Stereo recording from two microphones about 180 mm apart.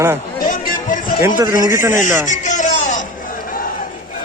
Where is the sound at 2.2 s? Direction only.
45° left (ahead or behind).